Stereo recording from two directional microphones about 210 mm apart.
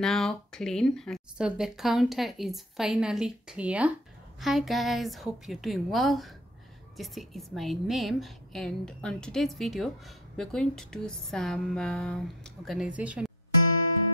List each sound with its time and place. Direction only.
0.0 s a woman's voice: 5° left (ahead or behind)